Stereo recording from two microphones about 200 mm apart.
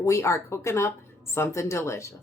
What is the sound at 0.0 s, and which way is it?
Speech, 15° left (ahead or behind).